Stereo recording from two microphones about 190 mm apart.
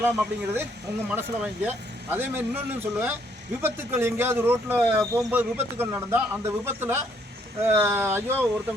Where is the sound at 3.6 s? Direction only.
10° right (ahead or behind).